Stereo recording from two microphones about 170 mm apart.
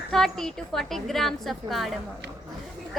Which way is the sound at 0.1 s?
Centre (ahead or behind).